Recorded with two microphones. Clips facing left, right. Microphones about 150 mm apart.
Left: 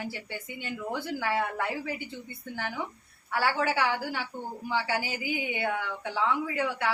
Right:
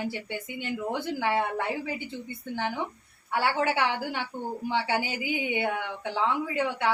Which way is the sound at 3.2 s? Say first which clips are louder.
Right 1 dB; 20° right (ahead or behind).